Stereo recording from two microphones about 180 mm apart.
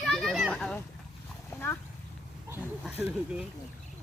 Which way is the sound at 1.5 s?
10° left (ahead or behind).